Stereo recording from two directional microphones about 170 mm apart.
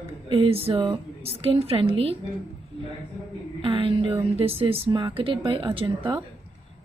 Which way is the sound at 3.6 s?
30° right (ahead or behind).